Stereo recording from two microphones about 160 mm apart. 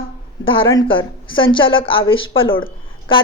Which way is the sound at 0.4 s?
35° left (ahead or behind).